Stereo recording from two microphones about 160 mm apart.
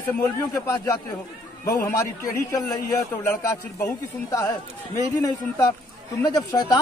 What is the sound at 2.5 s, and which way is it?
Speech, 20° left (ahead or behind).